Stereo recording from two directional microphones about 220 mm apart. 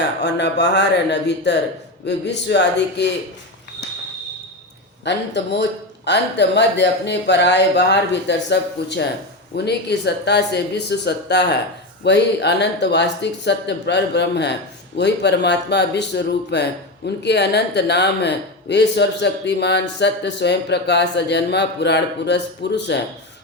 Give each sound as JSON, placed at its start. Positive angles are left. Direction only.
{"t": 0.2, "sound": "speech", "side_deg": 50}
{"t": 5.0, "sound": "speech", "side_deg": 50}